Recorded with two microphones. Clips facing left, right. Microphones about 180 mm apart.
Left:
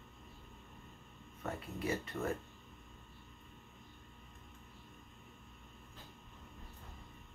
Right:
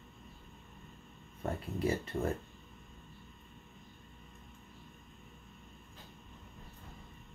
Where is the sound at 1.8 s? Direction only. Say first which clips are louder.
Right 5 dB; 30° right (ahead or behind).